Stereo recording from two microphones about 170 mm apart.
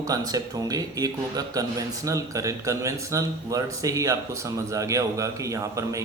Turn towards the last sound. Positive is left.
turn(degrees=-20)  # may be behind; listen again after turning